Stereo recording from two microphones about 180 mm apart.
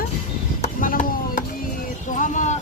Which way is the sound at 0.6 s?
50° left (ahead or behind).